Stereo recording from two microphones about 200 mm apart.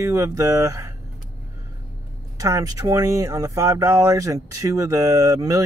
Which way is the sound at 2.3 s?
15° right (ahead or behind).